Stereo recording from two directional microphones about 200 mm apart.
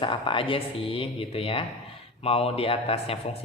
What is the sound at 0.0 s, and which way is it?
Speech, 25° left (ahead or behind).